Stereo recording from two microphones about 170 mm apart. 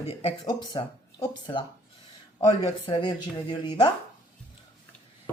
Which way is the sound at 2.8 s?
30° left (ahead or behind).